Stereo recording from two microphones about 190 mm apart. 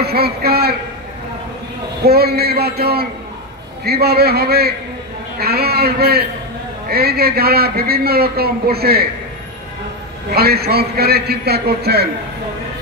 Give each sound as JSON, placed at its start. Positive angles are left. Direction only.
{"t": 0.0, "sound": "a man's voice", "side_deg": -55}
{"t": 2.0, "sound": "a man's voice", "side_deg": -55}
{"t": 10.3, "sound": "a man's voice", "side_deg": -55}